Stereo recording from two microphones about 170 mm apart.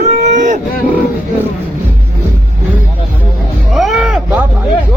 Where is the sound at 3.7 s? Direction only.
5° right (ahead or behind).